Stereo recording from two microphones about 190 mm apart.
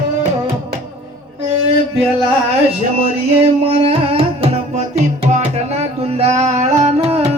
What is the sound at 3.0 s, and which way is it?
Music, 30° right (ahead or behind).